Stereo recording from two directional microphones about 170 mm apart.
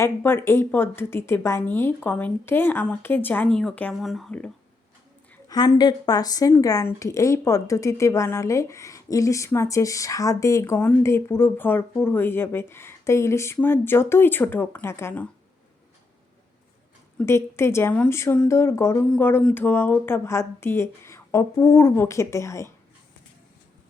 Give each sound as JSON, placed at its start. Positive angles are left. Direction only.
{"t": 0.0, "sound": "speech", "side_deg": 15}
{"t": 5.5, "sound": "speech", "side_deg": 25}
{"t": 17.2, "sound": "speech", "side_deg": 15}